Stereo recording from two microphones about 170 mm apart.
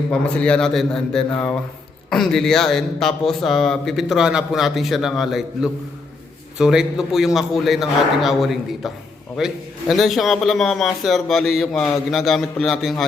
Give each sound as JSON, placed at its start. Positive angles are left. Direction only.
{"t": 0.1, "sound": "speech", "side_deg": 5}